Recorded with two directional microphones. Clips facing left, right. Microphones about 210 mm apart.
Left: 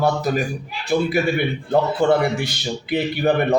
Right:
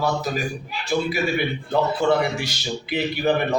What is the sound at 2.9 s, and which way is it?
Speech, 55° left (ahead or behind).